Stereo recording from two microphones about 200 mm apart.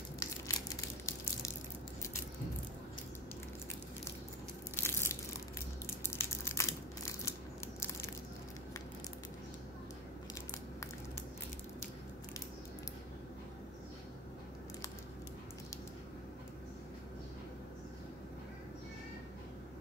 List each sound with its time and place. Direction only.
0.2 s crushing: 15° left (ahead or behind)
4.7 s crushing: 10° left (ahead or behind)